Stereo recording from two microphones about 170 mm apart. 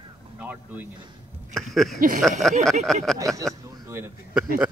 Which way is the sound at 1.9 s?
55° right (ahead or behind).